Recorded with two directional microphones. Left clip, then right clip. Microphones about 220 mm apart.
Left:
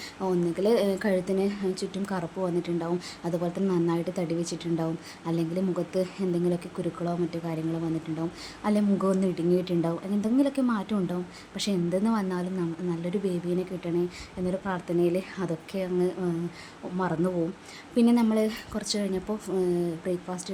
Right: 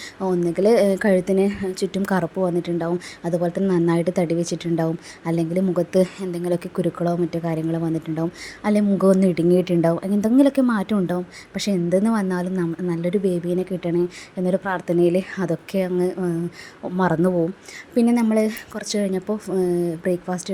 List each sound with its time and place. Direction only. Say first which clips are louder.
0.2 s a woman's voice: right 7 dB; 20° right (ahead or behind)